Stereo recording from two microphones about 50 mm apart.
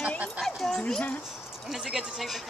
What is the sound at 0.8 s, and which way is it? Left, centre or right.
Speech, centre.